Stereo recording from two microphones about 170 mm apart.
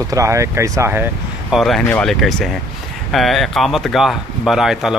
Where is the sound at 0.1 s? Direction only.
20° right (ahead or behind).